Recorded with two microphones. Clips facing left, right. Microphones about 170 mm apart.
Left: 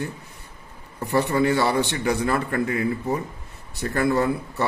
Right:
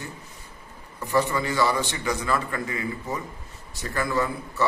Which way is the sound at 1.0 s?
60° left (ahead or behind).